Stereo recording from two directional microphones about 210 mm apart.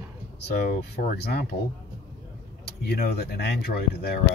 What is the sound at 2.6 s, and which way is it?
Speech, 50° left (ahead or behind).